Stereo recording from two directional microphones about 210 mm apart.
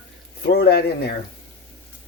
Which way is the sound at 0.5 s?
50° left (ahead or behind).